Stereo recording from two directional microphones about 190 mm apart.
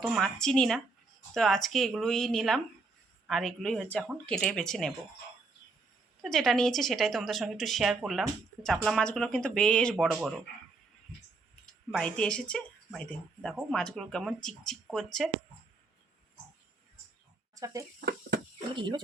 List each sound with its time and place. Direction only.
0.0 s speech: centre (ahead or behind)
6.2 s speech: centre (ahead or behind)
11.6 s speech: 5° left (ahead or behind)
17.5 s speech: 15° right (ahead or behind)